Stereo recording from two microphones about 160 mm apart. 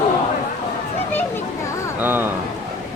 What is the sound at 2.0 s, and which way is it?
Speech, 10° right (ahead or behind).